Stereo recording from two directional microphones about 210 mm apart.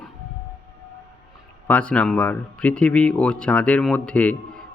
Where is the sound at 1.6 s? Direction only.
5° left (ahead or behind).